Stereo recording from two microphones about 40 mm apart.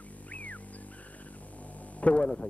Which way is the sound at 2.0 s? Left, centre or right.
Left.